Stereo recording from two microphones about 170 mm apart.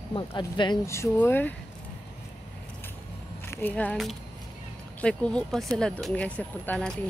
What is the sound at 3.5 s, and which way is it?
Speech, 10° left (ahead or behind).